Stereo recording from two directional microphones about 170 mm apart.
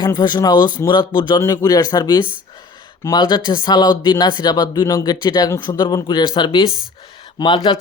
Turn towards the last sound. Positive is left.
turn(degrees=30)  # may be behind; listen again after turning